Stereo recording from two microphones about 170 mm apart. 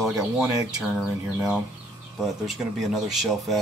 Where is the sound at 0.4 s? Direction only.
20° right (ahead or behind).